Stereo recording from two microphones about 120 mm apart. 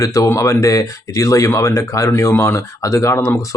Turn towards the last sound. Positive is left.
turn(degrees=25)  # may be behind; listen again after turning